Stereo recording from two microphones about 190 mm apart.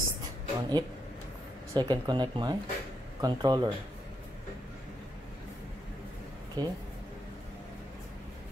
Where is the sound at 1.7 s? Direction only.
20° right (ahead or behind).